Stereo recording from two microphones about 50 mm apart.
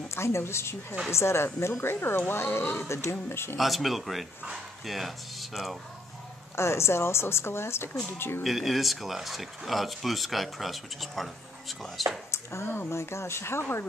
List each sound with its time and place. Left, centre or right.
0.1 s speech: left
3.5 s speech: centre
6.5 s speech: left
8.5 s speech: centre
12.3 s a sound: left
12.9 s speech: left